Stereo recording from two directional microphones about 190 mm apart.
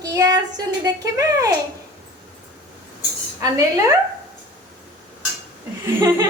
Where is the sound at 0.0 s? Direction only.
20° right (ahead or behind).